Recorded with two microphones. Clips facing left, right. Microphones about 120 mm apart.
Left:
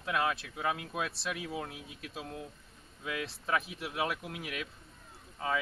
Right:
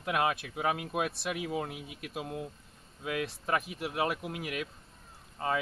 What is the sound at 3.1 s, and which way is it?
Speech, 50° right (ahead or behind).